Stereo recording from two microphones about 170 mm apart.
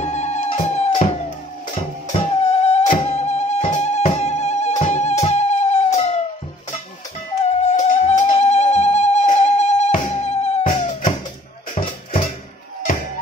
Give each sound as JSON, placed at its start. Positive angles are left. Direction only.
{"t": 0.0, "sound": "music", "side_deg": 40}
{"t": 2.4, "sound": "music", "side_deg": 40}
{"t": 7.4, "sound": "music", "side_deg": 40}